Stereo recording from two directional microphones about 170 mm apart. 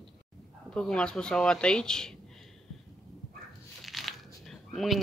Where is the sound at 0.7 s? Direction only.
5° left (ahead or behind).